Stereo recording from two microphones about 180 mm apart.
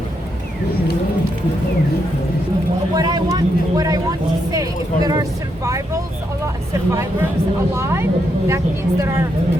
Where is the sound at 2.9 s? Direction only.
20° right (ahead or behind).